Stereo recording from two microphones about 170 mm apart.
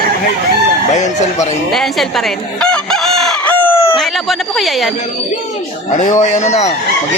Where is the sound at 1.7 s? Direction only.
Centre (ahead or behind).